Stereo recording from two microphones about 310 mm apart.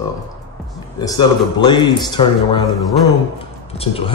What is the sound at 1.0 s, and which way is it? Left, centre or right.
Speech, centre.